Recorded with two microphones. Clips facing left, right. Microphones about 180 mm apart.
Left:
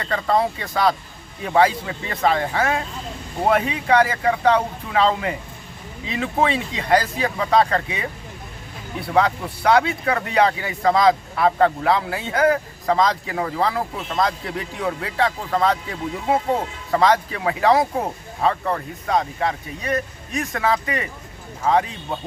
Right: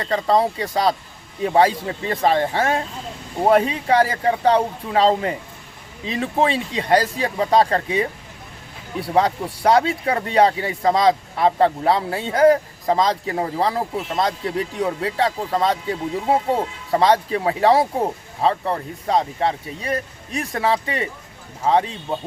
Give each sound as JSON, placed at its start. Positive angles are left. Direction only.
{"t": 0.0, "sound": "speech", "side_deg": -35}